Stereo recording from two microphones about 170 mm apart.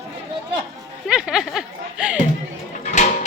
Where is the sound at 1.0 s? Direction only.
5° right (ahead or behind).